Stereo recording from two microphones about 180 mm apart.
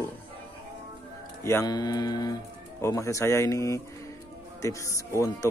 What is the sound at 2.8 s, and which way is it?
Speech, 15° left (ahead or behind).